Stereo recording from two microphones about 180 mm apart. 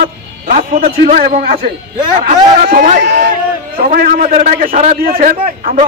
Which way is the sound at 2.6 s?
45° right (ahead or behind).